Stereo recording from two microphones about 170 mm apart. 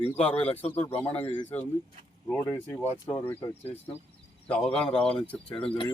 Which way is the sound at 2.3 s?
10° left (ahead or behind).